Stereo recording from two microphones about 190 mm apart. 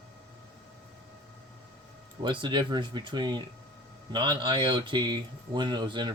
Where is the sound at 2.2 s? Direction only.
25° right (ahead or behind).